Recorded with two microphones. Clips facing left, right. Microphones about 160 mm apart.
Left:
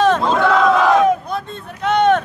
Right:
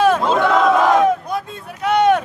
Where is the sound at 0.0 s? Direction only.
10° right (ahead or behind).